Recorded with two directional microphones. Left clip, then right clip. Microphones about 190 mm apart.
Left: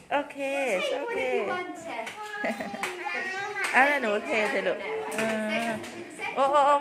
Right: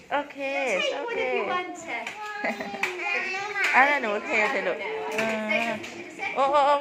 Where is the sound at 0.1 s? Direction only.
15° left (ahead or behind).